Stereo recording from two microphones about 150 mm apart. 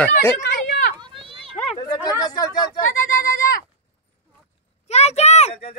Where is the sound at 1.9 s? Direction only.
25° left (ahead or behind).